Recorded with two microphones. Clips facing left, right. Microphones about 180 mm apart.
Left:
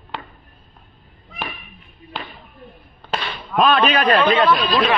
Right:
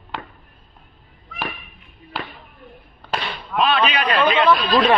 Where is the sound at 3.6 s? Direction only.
45° left (ahead or behind).